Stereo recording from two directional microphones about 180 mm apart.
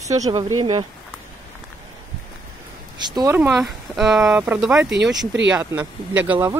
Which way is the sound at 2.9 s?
25° right (ahead or behind).